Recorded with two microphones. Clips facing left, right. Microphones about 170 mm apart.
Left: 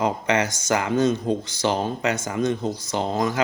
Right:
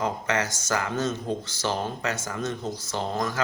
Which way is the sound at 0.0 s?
20° left (ahead or behind).